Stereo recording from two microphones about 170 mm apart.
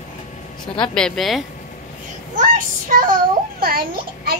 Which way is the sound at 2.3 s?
50° right (ahead or behind).